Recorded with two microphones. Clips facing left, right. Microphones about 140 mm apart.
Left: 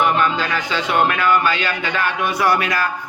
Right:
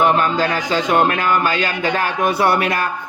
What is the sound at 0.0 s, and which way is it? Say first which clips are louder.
Speech: right 2 dB; 40° right (ahead or behind).